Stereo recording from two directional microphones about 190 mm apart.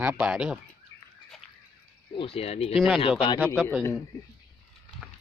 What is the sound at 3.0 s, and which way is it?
Speech, 25° left (ahead or behind).